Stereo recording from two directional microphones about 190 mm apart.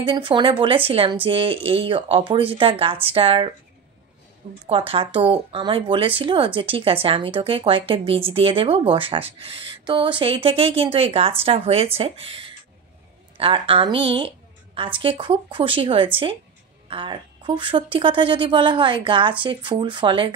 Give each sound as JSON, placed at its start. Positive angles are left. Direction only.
{"t": 0.0, "sound": "speech", "side_deg": -25}
{"t": 4.6, "sound": "speech", "side_deg": -30}